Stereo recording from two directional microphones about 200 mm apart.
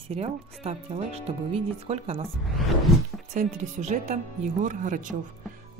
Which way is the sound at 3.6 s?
35° right (ahead or behind).